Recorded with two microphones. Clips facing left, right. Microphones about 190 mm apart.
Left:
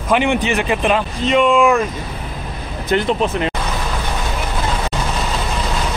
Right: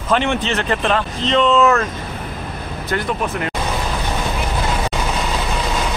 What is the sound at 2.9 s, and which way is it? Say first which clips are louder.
Speech: left 5 dB; 25° left (ahead or behind).